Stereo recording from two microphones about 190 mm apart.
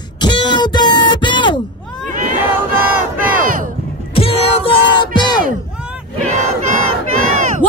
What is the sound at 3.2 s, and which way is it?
Battle cry, 45° right (ahead or behind).